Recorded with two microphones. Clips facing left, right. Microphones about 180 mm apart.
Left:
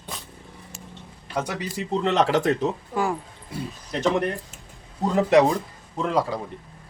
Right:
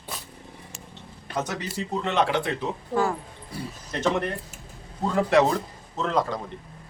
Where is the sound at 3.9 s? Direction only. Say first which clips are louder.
Left 2 dB; 15° left (ahead or behind).